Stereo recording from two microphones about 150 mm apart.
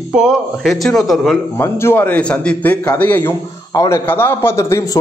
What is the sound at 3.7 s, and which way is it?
A man's voice, 20° left (ahead or behind).